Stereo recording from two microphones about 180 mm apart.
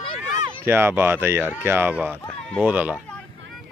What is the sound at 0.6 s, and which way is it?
Speech, 15° right (ahead or behind).